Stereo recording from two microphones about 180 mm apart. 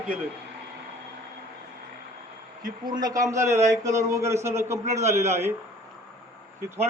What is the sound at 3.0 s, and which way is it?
A man's voice, 20° right (ahead or behind).